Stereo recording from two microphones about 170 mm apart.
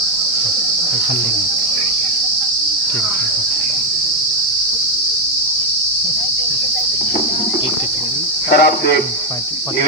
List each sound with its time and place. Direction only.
8.5 s a man's voice: 65° left (ahead or behind)